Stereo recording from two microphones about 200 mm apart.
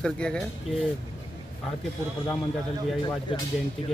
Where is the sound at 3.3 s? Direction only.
25° left (ahead or behind).